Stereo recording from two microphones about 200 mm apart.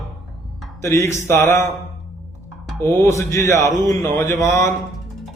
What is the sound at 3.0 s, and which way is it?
Speech, 15° left (ahead or behind).